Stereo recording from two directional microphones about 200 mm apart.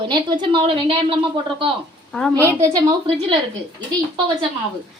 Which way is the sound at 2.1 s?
Centre (ahead or behind).